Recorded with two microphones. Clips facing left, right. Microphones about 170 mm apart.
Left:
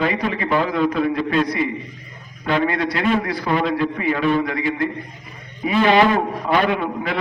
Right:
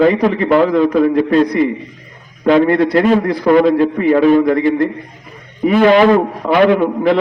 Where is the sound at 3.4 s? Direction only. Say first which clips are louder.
Right 12 dB; 50° right (ahead or behind).